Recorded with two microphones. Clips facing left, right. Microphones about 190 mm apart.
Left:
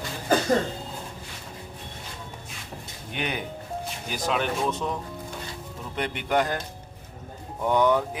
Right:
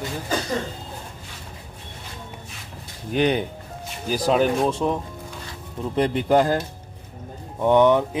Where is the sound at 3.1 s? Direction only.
35° right (ahead or behind).